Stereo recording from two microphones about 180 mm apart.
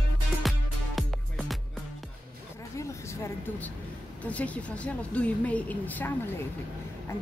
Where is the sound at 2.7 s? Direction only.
15° left (ahead or behind).